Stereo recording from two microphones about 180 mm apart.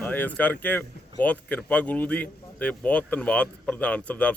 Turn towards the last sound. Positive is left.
turn(degrees=5)  # may be behind; listen again after turning